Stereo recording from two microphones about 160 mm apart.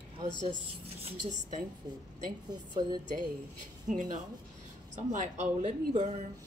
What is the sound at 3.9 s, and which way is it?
Speech, 50° right (ahead or behind).